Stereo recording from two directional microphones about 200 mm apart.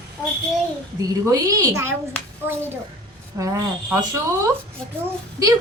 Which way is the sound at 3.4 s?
15° right (ahead or behind).